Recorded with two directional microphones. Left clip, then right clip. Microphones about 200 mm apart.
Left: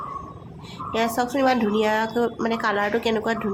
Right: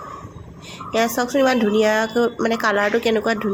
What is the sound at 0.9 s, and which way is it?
Speech, 15° right (ahead or behind).